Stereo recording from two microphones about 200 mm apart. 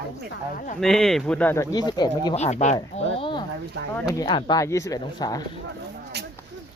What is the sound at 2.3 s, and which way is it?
Speech, 35° left (ahead or behind).